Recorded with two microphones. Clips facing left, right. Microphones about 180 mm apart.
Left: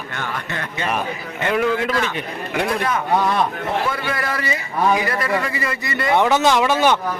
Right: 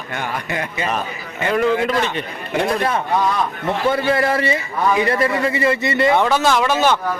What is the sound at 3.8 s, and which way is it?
A man's voice, 30° right (ahead or behind).